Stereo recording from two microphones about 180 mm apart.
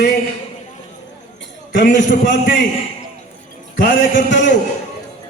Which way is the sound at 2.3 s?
80° left.